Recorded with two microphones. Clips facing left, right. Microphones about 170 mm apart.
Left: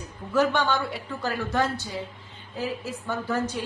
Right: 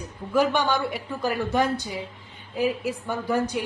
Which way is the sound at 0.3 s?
15° right (ahead or behind).